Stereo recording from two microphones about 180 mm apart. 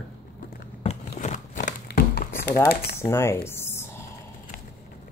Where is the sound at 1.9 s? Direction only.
60° left (ahead or behind).